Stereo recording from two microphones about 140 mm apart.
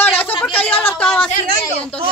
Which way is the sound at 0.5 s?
15° left (ahead or behind).